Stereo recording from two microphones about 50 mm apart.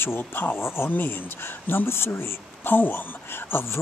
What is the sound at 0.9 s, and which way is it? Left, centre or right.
Speech, left.